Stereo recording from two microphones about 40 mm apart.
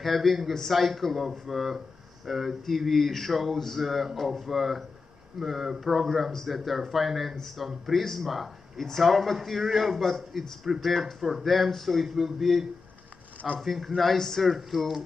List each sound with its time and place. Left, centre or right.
0.0 s a man's voice: centre